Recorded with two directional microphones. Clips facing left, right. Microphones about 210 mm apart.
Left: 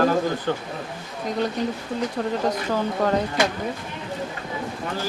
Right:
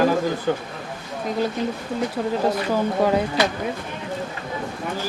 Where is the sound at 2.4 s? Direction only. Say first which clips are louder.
Right 2 dB; 10° right (ahead or behind).